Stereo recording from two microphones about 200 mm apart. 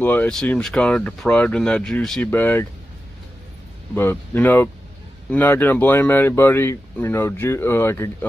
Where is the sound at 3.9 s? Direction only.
10° left (ahead or behind).